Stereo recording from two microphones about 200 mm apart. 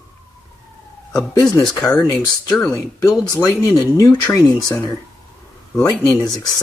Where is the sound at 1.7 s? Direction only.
20° left (ahead or behind).